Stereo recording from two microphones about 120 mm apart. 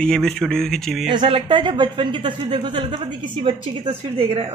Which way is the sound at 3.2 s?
40° right (ahead or behind).